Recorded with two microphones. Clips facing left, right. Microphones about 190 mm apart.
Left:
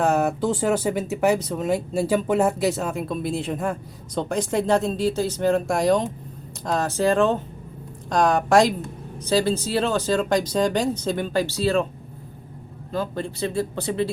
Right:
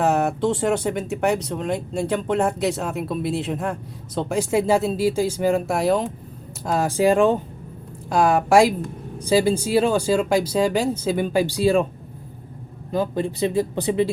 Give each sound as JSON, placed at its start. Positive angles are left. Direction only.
{"t": 0.0, "sound": "speech", "side_deg": 0}
{"t": 12.9, "sound": "speech", "side_deg": -15}